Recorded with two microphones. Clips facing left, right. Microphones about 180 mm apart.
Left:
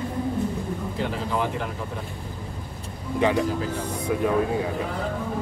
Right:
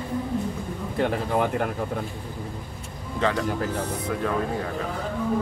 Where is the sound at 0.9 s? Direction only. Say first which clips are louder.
Right 5 dB; 55° right (ahead or behind).